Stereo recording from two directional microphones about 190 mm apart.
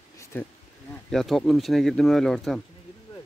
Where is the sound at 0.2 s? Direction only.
10° left (ahead or behind).